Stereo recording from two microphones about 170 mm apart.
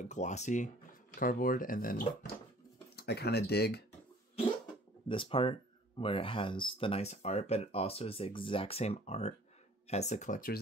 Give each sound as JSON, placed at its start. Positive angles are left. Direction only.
{"t": 0.0, "sound": "speech", "side_deg": 45}
{"t": 1.2, "sound": "speech", "side_deg": 55}
{"t": 3.0, "sound": "speech", "side_deg": 75}
{"t": 5.0, "sound": "speech", "side_deg": 30}